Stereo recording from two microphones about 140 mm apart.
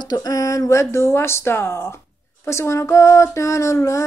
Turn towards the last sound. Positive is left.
turn(degrees=20)  # may be behind; listen again after turning